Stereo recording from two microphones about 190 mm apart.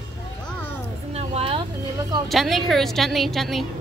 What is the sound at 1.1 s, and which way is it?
Speech, 30° right (ahead or behind).